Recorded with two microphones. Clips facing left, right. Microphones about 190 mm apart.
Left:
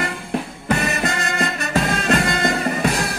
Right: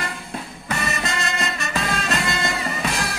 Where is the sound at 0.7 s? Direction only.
55° left (ahead or behind).